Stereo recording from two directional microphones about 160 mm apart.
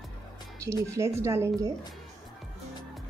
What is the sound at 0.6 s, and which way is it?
Speech, 20° right (ahead or behind).